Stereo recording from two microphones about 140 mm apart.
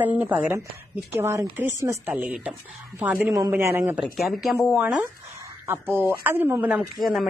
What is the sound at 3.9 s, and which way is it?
A woman's voice, 5° right (ahead or behind).